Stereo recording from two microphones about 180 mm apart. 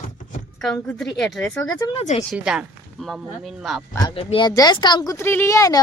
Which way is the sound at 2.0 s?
40° left (ahead or behind).